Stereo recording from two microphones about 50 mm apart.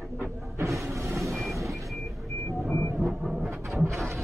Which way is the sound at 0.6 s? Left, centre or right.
Right.